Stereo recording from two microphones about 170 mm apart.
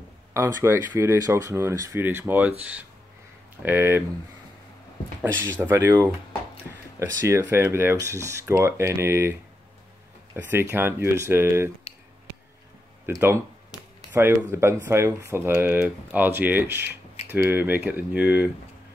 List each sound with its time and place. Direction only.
0.3 s speech: 15° right (ahead or behind)
5.4 s speech: 15° right (ahead or behind)
10.3 s speech: 15° right (ahead or behind)
14.5 s speech: 15° right (ahead or behind)